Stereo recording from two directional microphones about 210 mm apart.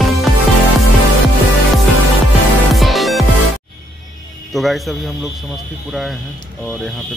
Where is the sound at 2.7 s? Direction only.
Centre (ahead or behind).